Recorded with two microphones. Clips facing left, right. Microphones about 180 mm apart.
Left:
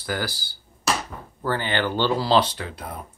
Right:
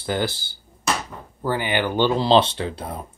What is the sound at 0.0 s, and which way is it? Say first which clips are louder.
Speech: right 4 dB; 25° right (ahead or behind).